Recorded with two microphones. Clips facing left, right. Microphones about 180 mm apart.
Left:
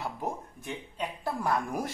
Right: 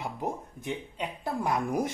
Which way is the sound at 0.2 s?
20° right (ahead or behind).